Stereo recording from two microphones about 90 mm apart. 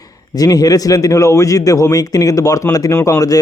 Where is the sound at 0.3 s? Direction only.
45° left (ahead or behind).